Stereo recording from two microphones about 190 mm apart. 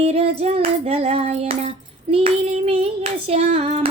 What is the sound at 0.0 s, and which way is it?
Child singing, 30° right (ahead or behind).